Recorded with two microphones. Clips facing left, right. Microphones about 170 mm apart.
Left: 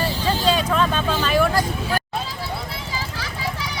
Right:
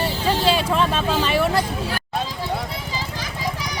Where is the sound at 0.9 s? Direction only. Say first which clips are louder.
Right 1 dB; 5° right (ahead or behind).